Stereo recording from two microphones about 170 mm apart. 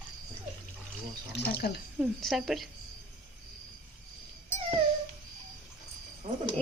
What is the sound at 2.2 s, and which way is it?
Speech, centre (ahead or behind).